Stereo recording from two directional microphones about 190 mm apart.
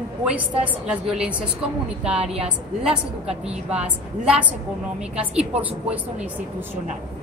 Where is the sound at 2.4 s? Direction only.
5° right (ahead or behind).